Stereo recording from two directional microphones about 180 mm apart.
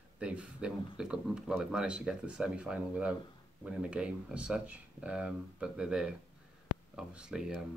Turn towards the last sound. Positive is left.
turn(degrees=-5)  # may be behind; listen again after turning